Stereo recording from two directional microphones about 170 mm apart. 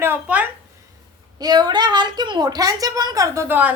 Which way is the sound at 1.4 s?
25° right (ahead or behind).